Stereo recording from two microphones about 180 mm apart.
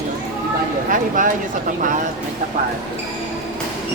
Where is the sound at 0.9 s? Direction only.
45° right (ahead or behind).